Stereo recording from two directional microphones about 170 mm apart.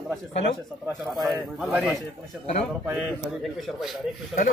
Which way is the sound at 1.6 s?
5° right (ahead or behind).